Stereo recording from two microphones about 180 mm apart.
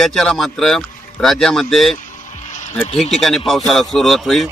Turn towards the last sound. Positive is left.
turn(degrees=0)  # may be behind; listen again after turning